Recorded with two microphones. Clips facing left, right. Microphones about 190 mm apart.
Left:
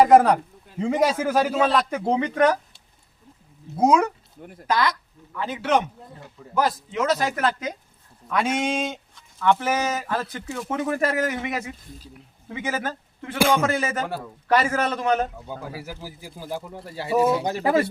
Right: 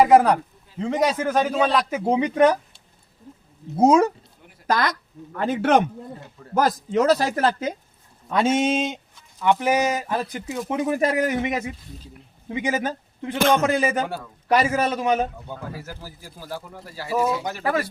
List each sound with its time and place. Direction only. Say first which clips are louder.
0.0 s a man's voice: even; centre (ahead or behind)
2.0 s speech: right 3 dB; 15° right (ahead or behind)
3.8 s speech: right 3 dB; 30° right (ahead or behind)
4.6 s speech: even; 45° right (ahead or behind); by 15.3 s 10° right (ahead or behind)
15.4 s speech: even; 10° left (ahead or behind); by 17.8 s 25° left (ahead or behind)